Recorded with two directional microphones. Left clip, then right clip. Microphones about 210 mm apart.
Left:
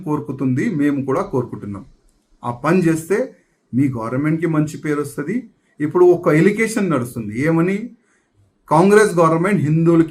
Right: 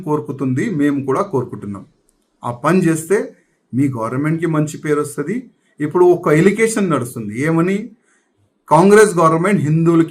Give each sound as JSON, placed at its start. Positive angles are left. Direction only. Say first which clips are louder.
{"t": 0.0, "sound": "speech", "louder": "right 2 dB", "side_deg": -5}